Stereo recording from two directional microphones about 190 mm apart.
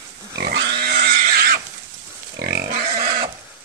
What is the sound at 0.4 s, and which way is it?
Pig, 60° right (ahead or behind).